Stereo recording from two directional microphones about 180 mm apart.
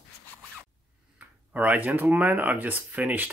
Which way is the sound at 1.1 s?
10° right (ahead or behind).